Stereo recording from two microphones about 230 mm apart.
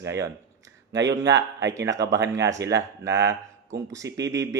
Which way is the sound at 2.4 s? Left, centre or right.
Centre.